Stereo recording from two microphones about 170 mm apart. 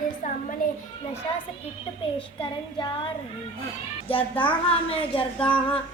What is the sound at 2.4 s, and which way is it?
Speech, 30° left (ahead or behind).